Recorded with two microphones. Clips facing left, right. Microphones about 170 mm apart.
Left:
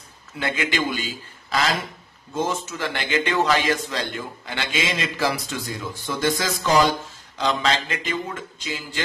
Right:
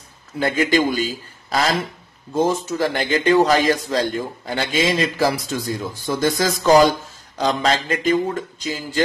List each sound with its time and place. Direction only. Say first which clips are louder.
0.4 s speech: right 7 dB; 40° right (ahead or behind)